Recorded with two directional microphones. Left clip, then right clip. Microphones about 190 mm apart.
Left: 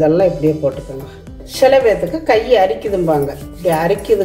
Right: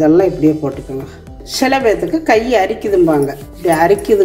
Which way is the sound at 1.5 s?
35° right (ahead or behind).